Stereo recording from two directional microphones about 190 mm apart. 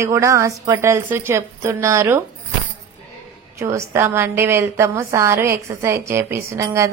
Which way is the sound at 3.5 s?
15° right (ahead or behind).